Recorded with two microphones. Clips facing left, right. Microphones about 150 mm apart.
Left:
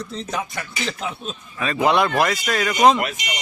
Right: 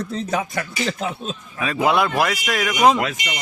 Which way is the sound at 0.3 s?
45° right (ahead or behind).